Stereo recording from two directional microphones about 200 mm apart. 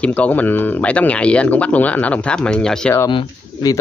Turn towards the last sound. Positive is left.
turn(degrees=20)  # may be behind; listen again after turning